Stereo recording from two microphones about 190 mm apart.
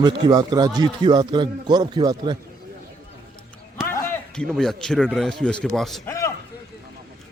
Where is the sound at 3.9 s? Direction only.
5° left (ahead or behind).